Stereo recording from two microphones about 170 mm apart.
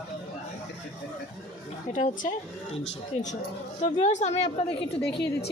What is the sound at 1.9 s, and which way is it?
Speech, 45° left (ahead or behind).